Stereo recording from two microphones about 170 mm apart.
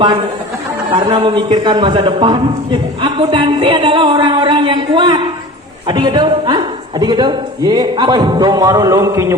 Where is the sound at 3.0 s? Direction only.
30° right (ahead or behind).